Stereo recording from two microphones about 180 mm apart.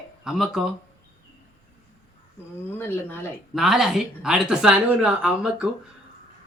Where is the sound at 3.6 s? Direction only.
Centre (ahead or behind).